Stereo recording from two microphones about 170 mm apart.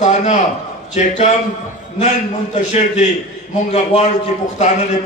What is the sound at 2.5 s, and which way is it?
Speech, 45° left (ahead or behind).